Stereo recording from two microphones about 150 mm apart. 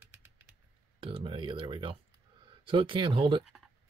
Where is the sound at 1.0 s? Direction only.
35° right (ahead or behind).